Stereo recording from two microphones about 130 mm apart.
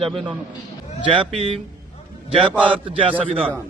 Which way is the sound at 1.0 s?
40° right (ahead or behind).